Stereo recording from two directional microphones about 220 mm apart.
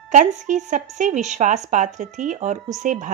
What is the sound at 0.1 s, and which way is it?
A woman's voice, 35° right (ahead or behind).